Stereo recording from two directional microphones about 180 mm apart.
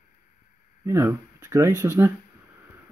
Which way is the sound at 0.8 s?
15° right (ahead or behind).